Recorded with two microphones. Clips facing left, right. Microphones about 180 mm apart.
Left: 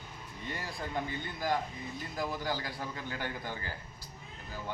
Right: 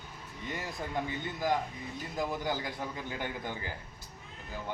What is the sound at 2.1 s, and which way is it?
A man's voice, 20° right (ahead or behind).